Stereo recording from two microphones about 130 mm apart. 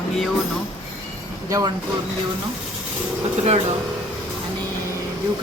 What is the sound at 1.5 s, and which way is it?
Speech, 25° right (ahead or behind).